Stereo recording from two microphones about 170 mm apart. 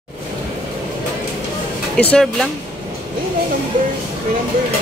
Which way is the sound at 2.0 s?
10° left (ahead or behind).